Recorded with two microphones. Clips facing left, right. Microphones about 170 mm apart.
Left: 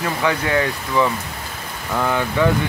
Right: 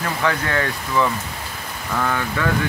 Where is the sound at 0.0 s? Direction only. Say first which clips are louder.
Left 2 dB; 10° left (ahead or behind).